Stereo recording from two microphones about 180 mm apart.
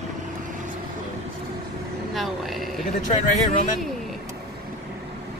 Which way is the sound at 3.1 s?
40° left (ahead or behind).